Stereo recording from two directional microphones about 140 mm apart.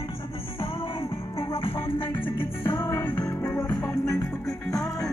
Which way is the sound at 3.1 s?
25° left (ahead or behind).